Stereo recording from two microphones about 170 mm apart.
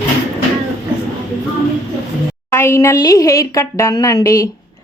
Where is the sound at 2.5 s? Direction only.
15° left (ahead or behind).